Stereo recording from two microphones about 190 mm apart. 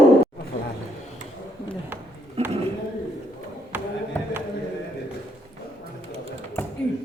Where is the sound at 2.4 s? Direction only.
35° right (ahead or behind).